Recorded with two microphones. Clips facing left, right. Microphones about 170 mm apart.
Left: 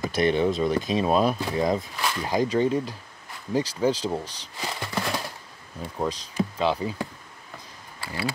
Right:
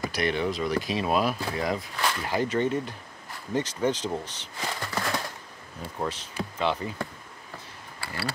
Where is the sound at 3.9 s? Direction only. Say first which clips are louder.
Left 3 dB; 35° left (ahead or behind).